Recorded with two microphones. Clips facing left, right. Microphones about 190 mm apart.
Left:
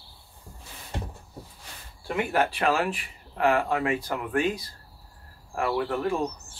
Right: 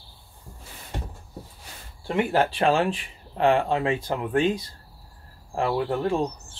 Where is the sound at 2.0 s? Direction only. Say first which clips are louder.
Right 3 dB; 30° right (ahead or behind).